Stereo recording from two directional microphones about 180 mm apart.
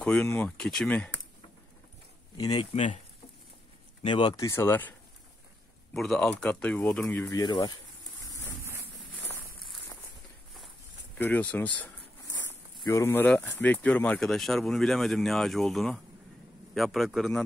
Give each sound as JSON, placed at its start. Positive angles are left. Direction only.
{"t": 0.0, "sound": "speech", "side_deg": 5}
{"t": 2.3, "sound": "speech", "side_deg": 20}
{"t": 2.7, "sound": "speech", "side_deg": 35}
{"t": 4.0, "sound": "speech", "side_deg": 25}
{"t": 5.9, "sound": "speech", "side_deg": 0}
{"t": 7.3, "sound": "speech", "side_deg": 20}
{"t": 11.1, "sound": "speech", "side_deg": 10}
{"t": 12.3, "sound": "a sound", "side_deg": 10}
{"t": 12.7, "sound": "speech", "side_deg": 20}